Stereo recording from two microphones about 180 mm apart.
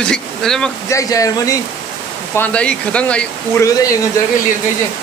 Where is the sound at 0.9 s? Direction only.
20° left (ahead or behind).